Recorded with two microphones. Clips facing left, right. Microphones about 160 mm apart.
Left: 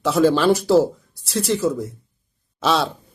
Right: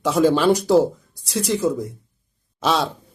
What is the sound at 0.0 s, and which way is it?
Speech, 10° right (ahead or behind).